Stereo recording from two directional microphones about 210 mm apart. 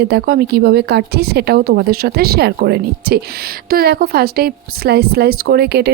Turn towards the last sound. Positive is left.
turn(degrees=-50)  # may be behind; listen again after turning